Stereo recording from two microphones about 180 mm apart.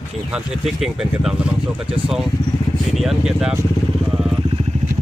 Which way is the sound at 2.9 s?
Centre (ahead or behind).